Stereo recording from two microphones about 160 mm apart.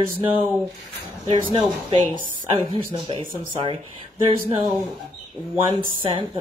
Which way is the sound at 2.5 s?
30° right (ahead or behind).